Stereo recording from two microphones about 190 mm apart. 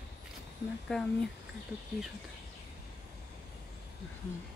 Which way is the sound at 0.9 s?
5° left (ahead or behind).